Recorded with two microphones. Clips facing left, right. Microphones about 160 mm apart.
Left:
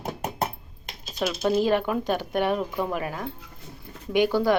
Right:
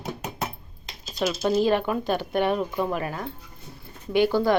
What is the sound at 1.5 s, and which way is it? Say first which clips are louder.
A woman's voice: even; 10° left (ahead or behind).